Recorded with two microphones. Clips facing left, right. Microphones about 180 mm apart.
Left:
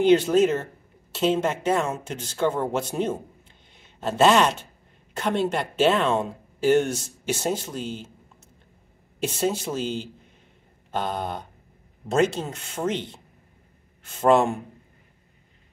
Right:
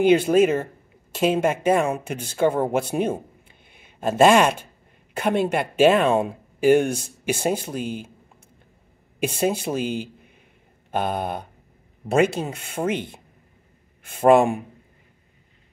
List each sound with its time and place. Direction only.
0.0 s a woman's voice: 10° right (ahead or behind)
9.2 s speech: 10° right (ahead or behind)